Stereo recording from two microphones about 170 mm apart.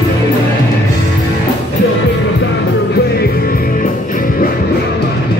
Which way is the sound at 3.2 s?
60° left (ahead or behind).